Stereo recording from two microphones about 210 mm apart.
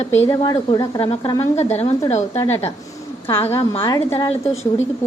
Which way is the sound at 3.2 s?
10° left (ahead or behind).